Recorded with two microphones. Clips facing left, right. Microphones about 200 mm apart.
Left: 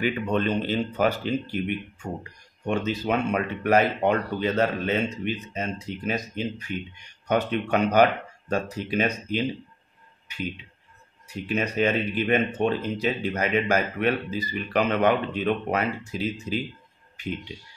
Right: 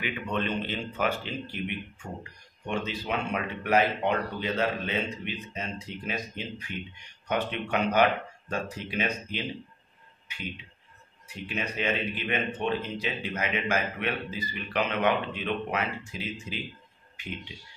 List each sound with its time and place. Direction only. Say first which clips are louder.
0.0 s speech: left 6 dB; 40° left (ahead or behind)
2.6 s speech: left 6 dB; 45° left (ahead or behind)
11.4 s speech: left 7 dB; 40° left (ahead or behind)